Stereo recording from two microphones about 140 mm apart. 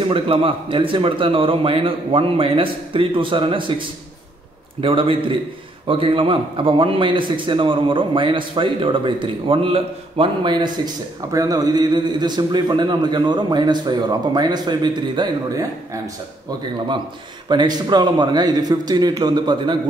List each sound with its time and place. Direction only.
0.1 s a man's voice: 40° right (ahead or behind)
4.8 s a man's voice: 40° right (ahead or behind)
17.5 s a man's voice: 30° right (ahead or behind)